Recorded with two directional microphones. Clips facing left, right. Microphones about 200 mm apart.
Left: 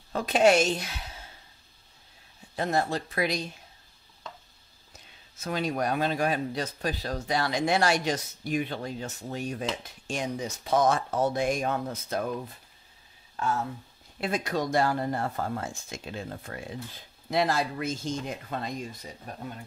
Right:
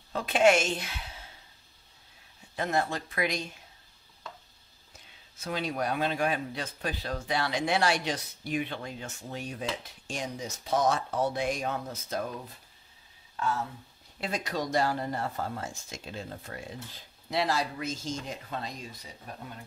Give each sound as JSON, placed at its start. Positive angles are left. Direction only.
{"t": 0.1, "sound": "speech", "side_deg": 40}
{"t": 2.5, "sound": "speech", "side_deg": 35}
{"t": 5.4, "sound": "speech", "side_deg": 45}
{"t": 14.2, "sound": "speech", "side_deg": 50}